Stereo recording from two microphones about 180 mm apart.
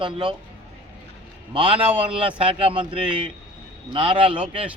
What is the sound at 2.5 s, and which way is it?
Speech, 30° right (ahead or behind).